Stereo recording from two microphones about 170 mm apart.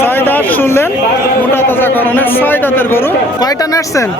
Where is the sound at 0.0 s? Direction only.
10° left (ahead or behind).